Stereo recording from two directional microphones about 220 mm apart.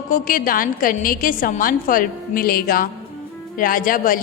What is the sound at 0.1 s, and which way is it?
A woman's voice, 40° left (ahead or behind).